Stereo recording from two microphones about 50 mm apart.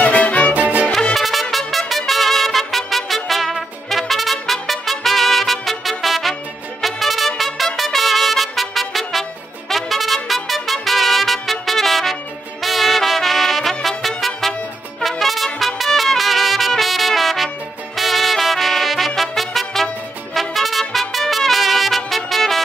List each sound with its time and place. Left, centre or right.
0.0 s music: left
0.6 s music: right
1.1 s music: centre
3.3 s trumpet: centre
6.8 s music: centre
12.6 s trumpet: centre
15.0 s music: centre
16.0 s trumpet: centre
20.3 s music: centre